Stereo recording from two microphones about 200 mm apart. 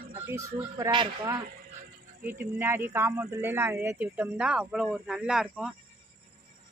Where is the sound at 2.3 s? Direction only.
10° right (ahead or behind).